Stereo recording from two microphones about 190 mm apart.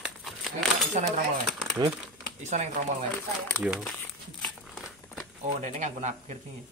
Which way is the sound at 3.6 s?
5° right (ahead or behind).